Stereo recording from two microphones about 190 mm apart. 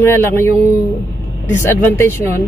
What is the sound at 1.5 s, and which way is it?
Speech, 10° left (ahead or behind).